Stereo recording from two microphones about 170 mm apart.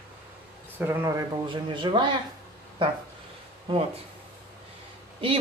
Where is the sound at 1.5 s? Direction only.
30° right (ahead or behind).